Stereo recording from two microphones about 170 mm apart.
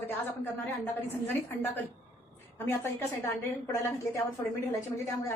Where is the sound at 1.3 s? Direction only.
10° left (ahead or behind).